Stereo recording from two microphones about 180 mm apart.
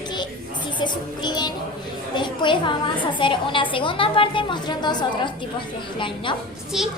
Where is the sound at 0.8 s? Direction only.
25° left (ahead or behind).